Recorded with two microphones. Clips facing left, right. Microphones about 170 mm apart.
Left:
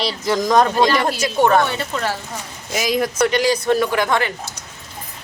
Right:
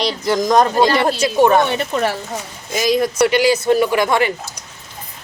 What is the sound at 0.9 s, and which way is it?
Speech, 30° right (ahead or behind).